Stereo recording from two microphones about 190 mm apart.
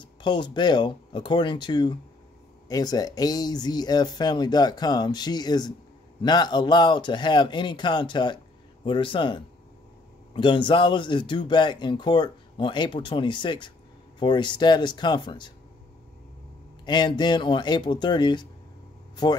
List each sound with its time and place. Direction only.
0.0 s speech: 25° left (ahead or behind)
16.8 s speech: 25° left (ahead or behind)